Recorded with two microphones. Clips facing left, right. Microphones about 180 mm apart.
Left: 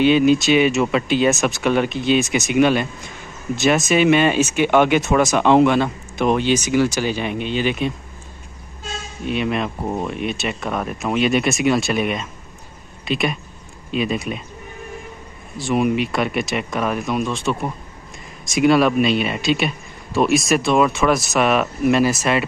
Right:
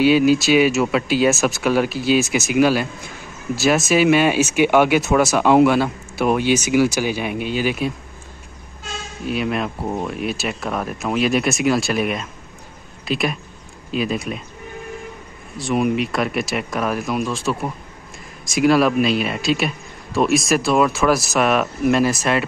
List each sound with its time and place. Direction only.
0.0 s speech: 5° right (ahead or behind)
9.2 s speech: 5° right (ahead or behind)
15.5 s speech: centre (ahead or behind)